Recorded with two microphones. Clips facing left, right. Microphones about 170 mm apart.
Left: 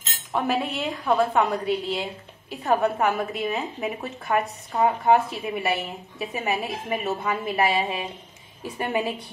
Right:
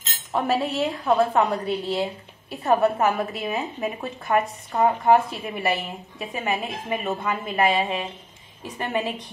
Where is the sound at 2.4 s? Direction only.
Centre (ahead or behind).